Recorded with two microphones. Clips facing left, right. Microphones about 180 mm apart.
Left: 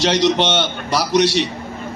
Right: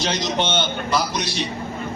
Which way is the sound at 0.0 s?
75° left (ahead or behind).